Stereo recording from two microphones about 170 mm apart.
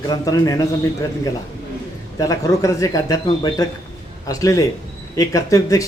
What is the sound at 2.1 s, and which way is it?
Speech, 20° left (ahead or behind).